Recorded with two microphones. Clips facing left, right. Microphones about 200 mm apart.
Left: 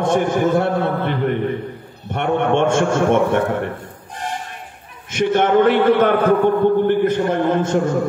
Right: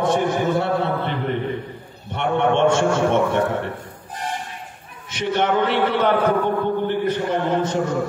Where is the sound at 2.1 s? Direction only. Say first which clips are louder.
Left 2 dB; 50° left (ahead or behind).